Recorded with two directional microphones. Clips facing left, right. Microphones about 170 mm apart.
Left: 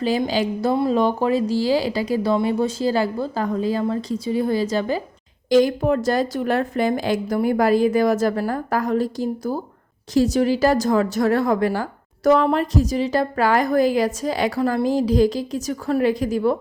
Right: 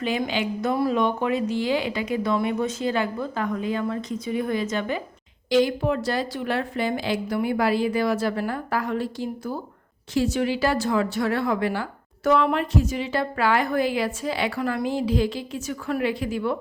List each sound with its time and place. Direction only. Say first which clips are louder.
0.0 s a woman's voice: left 5 dB; 35° left (ahead or behind)
5.5 s a woman's voice: left 4 dB; 45° left (ahead or behind)